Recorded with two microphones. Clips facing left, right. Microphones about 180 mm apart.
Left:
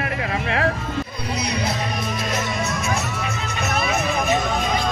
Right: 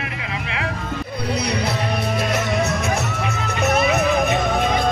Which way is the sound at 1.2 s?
60° right (ahead or behind).